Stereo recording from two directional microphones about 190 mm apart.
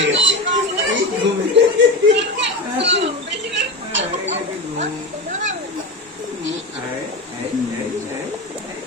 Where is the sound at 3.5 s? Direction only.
70° right (ahead or behind).